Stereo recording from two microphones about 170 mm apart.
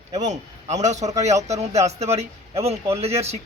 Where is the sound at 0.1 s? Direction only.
40° right (ahead or behind).